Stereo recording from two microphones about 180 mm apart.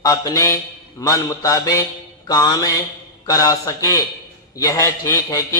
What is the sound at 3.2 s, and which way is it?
A man's voice, 20° left (ahead or behind).